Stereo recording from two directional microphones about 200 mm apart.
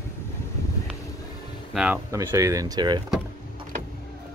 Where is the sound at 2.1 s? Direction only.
15° right (ahead or behind).